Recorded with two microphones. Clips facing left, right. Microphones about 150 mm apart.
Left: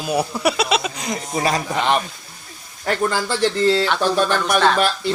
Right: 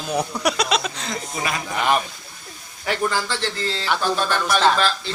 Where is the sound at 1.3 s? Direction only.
35° left (ahead or behind).